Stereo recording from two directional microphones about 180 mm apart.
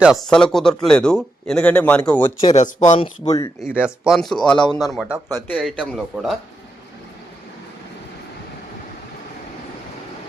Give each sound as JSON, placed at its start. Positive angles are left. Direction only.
{"t": 0.0, "sound": "speech", "side_deg": 0}
{"t": 2.4, "sound": "speech", "side_deg": 40}
{"t": 3.2, "sound": "speech", "side_deg": 20}
{"t": 3.8, "sound": "speech", "side_deg": -5}